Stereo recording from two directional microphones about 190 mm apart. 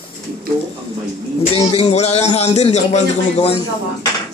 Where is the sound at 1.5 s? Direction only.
30° left (ahead or behind).